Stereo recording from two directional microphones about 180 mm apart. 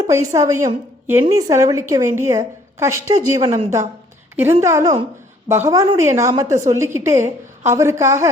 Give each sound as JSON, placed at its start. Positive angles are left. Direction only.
{"t": 0.1, "sound": "a woman's voice", "side_deg": -15}